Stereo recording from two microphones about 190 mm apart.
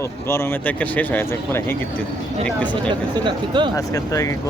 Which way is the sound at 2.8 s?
25° right (ahead or behind).